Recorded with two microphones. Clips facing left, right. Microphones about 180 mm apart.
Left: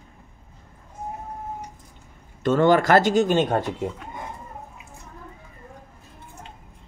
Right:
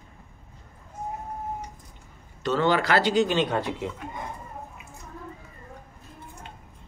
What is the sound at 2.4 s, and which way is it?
Speech, 50° left (ahead or behind).